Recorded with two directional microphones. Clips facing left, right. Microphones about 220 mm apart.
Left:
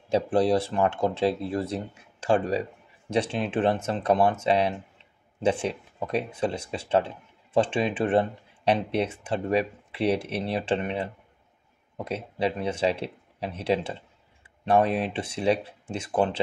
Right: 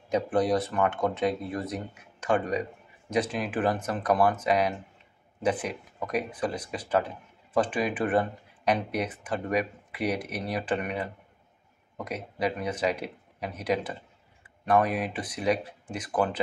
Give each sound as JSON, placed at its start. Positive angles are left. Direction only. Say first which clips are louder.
{"t": 0.1, "sound": "speech", "louder": "left 3 dB", "side_deg": 30}